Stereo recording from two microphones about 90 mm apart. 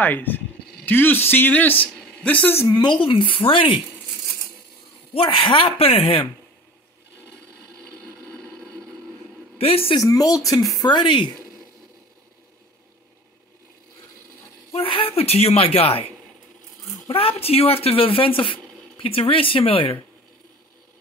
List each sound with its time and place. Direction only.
0.0 s a man's voice: 20° left (ahead or behind)
2.7 s speech: 55° left (ahead or behind); by 3.7 s 75° left (ahead or behind)
5.1 s speech: 75° left (ahead or behind)
7.8 s a sound: 10° left (ahead or behind)
9.6 s speech: 90° left
9.9 s speech: 40° left (ahead or behind)
10.9 s speech: 55° left (ahead or behind)
14.7 s speech: 85° left
17.1 s speech: 90° left